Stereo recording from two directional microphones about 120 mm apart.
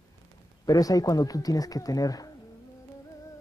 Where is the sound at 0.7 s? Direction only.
30° left (ahead or behind).